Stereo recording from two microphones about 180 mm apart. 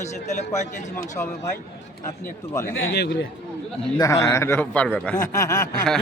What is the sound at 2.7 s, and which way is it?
Speech, 80° left.